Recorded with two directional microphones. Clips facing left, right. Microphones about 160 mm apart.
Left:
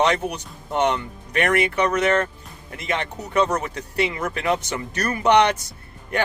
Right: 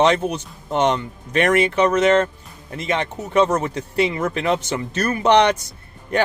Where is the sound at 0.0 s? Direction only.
25° right (ahead or behind).